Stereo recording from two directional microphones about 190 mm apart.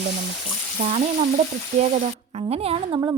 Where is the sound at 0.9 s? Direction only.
35° right (ahead or behind).